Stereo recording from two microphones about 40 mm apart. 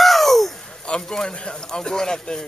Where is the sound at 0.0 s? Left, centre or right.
Centre.